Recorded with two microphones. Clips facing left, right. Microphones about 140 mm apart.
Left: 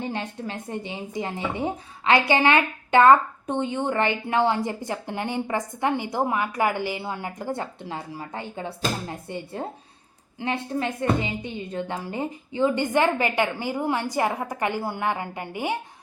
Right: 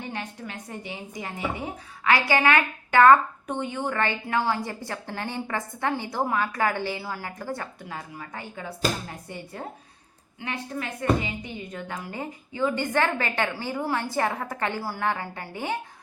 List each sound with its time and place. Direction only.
0.1 s a woman's voice: 30° left (ahead or behind)